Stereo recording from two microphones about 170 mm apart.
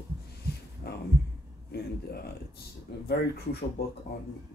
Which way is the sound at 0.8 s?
70° left (ahead or behind).